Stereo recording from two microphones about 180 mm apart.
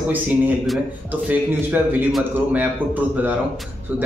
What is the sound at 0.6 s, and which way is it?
Speech, 5° right (ahead or behind).